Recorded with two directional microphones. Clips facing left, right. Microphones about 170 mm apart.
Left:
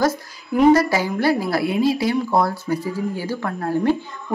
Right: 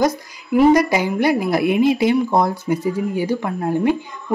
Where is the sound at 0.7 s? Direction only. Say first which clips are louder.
Right 2 dB; 15° right (ahead or behind).